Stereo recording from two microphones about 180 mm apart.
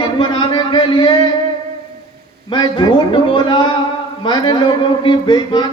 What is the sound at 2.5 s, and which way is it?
Speech, 25° left (ahead or behind).